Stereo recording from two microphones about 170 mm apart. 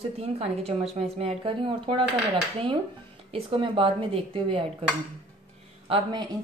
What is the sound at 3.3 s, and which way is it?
Speech, 30° right (ahead or behind).